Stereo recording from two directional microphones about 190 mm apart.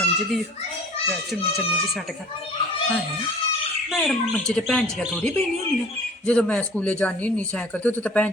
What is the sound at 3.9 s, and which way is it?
Speech, centre (ahead or behind).